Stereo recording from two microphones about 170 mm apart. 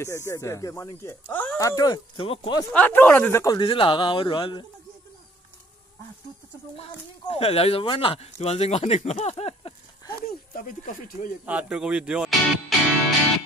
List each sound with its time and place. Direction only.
0.0 s speech: 15° left (ahead or behind)
1.3 s speech: 10° left (ahead or behind); by 2.6 s 30° left (ahead or behind)
2.7 s speech: 10° left (ahead or behind)
3.6 s speech: 30° left (ahead or behind)
6.8 s speech: 35° left (ahead or behind)
10.1 s speech: 55° left (ahead or behind)
11.4 s speech: 5° right (ahead or behind)